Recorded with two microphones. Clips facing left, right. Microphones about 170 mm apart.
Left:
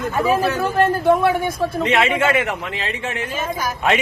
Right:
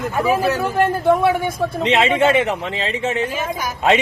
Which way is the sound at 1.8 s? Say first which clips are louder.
Right 3 dB; 20° right (ahead or behind).